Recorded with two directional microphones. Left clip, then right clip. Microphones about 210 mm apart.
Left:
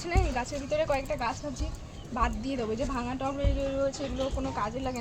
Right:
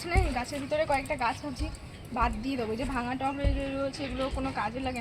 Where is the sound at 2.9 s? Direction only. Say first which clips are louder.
Right 1 dB; 30° left (ahead or behind).